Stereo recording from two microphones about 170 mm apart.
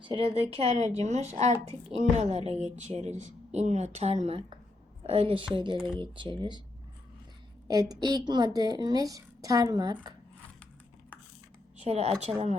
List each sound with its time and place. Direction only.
0.0 s a woman's voice: 30° right (ahead or behind)
5.7 s speech: 5° right (ahead or behind)
6.0 s a woman's voice: 30° right (ahead or behind)
7.7 s a woman's voice: 20° right (ahead or behind)
11.8 s a woman's voice: 40° right (ahead or behind)